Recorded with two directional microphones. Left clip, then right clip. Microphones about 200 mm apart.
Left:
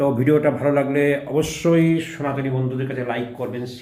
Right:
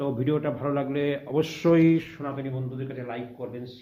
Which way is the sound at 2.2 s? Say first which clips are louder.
Left 9 dB; 5° right (ahead or behind).